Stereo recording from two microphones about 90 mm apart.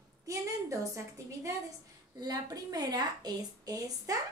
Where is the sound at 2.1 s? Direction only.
45° right (ahead or behind).